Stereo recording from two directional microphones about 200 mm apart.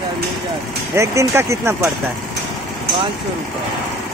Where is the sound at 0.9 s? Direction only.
15° right (ahead or behind).